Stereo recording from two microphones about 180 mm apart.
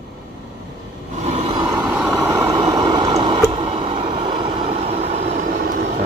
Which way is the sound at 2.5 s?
20° right (ahead or behind).